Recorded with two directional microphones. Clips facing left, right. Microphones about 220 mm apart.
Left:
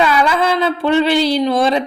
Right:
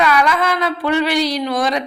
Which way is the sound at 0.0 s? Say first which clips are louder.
Left 2 dB; 30° left (ahead or behind).